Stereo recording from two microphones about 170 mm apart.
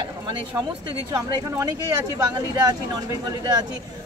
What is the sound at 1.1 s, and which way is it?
Speech, 20° right (ahead or behind).